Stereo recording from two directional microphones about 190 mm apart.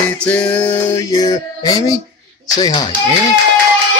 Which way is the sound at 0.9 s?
20° left (ahead or behind).